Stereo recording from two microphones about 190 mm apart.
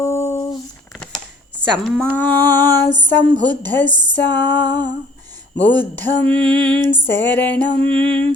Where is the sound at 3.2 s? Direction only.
25° right (ahead or behind).